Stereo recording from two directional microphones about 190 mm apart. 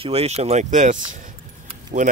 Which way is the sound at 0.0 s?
30° right (ahead or behind).